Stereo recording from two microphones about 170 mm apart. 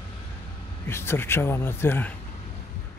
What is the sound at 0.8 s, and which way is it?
Speech, 15° left (ahead or behind).